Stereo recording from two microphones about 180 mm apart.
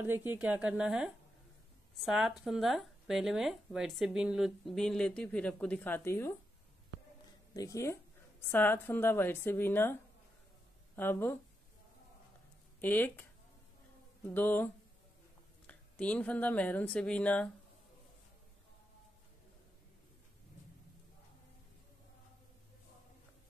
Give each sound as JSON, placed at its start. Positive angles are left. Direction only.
{"t": 0.0, "sound": "a woman's voice", "side_deg": -10}
{"t": 7.5, "sound": "a woman's voice", "side_deg": 15}
{"t": 11.0, "sound": "a woman's voice", "side_deg": 10}
{"t": 12.8, "sound": "a woman's voice", "side_deg": 10}